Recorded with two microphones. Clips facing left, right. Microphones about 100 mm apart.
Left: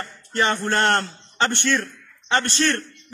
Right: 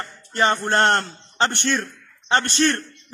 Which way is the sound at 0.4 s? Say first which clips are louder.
Right 2 dB; 25° right (ahead or behind).